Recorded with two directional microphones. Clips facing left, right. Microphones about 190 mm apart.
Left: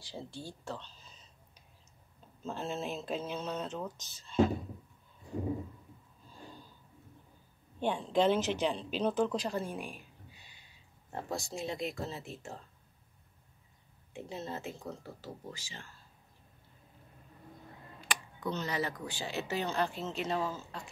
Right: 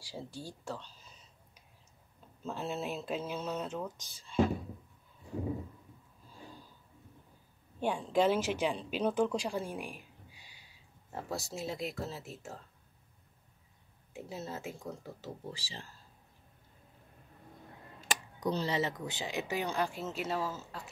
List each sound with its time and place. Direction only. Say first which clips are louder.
0.0 s a sound: even; 10° right (ahead or behind)
2.4 s speech: even; 5° right (ahead or behind)
7.8 s speech: even; 5° right (ahead or behind)
14.1 s speech: left 1 dB; 5° right (ahead or behind)
15.5 s speech: right 2 dB; 35° right (ahead or behind)
18.1 s a sound: right 2 dB; 40° right (ahead or behind)
18.5 s speech: right 2 dB; 30° right (ahead or behind); by 20.9 s 5° right (ahead or behind)